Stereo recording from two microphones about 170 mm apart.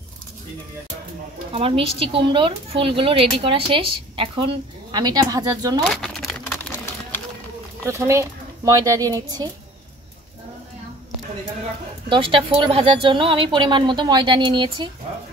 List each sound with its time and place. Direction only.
1.5 s speech: 35° right (ahead or behind); by 5.9 s 20° right (ahead or behind)
5.9 s a sound: centre (ahead or behind)
7.8 s speech: 15° right (ahead or behind)
12.1 s a woman's voice: 30° right (ahead or behind)